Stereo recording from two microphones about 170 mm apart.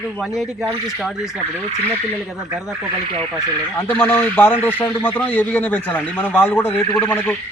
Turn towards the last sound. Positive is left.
turn(degrees=10)  # may be behind; listen again after turning